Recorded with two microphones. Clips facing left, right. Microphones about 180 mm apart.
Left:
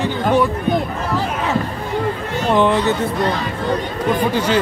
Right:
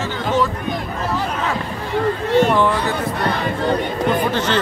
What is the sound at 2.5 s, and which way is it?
Speech, 20° left (ahead or behind).